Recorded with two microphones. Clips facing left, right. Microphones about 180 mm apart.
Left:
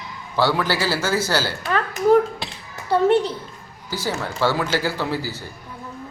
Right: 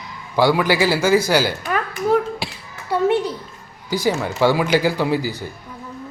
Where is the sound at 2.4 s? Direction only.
10° right (ahead or behind).